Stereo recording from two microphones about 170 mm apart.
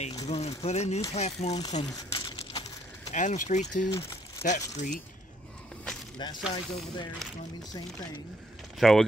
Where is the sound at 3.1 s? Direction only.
45° left (ahead or behind).